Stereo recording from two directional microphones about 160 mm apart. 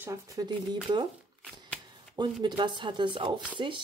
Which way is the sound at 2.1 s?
30° right (ahead or behind).